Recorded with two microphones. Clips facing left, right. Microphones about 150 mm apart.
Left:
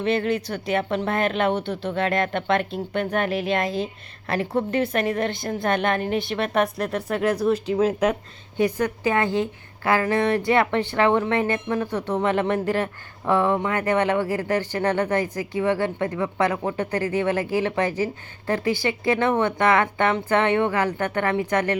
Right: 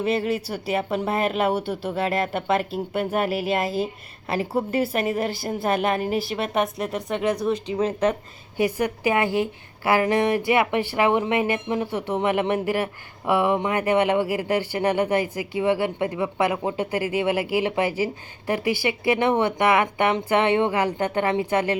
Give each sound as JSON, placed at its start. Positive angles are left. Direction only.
{"t": 0.0, "sound": "a woman's voice", "side_deg": -5}
{"t": 8.5, "sound": "a woman's voice", "side_deg": -10}